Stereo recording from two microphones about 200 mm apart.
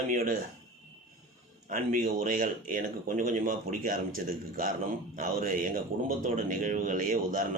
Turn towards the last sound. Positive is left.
turn(degrees=-40)  # may be behind; listen again after turning